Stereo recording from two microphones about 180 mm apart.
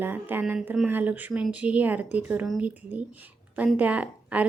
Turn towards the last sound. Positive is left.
turn(degrees=-10)  # may be behind; listen again after turning